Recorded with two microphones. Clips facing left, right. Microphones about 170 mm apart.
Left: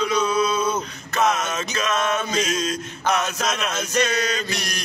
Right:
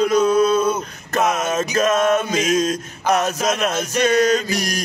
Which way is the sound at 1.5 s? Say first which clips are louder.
Right 7 dB; 50° right (ahead or behind).